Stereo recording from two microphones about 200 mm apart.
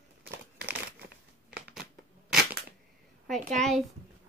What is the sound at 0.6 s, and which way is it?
Crumpling, 55° right (ahead or behind).